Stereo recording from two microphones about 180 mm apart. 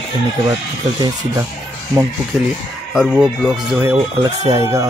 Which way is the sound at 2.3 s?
5° right (ahead or behind).